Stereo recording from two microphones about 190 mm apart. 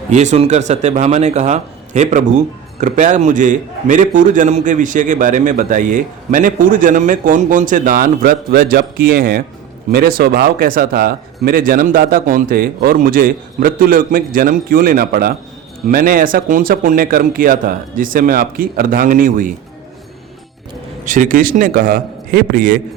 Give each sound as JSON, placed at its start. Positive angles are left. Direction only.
{"t": 0.1, "sound": "a man's voice", "side_deg": -40}
{"t": 21.0, "sound": "a man's voice", "side_deg": -45}